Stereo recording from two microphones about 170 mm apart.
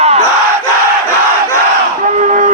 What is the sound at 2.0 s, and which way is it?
Crowd, 50° right (ahead or behind).